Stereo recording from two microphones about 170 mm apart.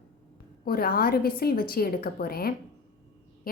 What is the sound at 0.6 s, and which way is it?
A woman's voice, 60° left (ahead or behind).